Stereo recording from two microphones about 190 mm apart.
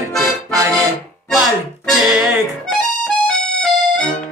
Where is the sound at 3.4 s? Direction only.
5° left (ahead or behind).